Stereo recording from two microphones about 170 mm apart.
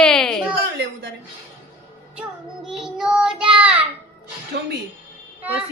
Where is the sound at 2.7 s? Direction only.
5° right (ahead or behind).